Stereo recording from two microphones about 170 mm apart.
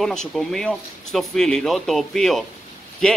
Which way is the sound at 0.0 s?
5° left (ahead or behind).